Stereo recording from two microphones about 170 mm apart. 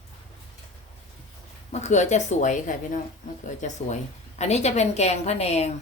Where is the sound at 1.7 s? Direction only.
45° left (ahead or behind).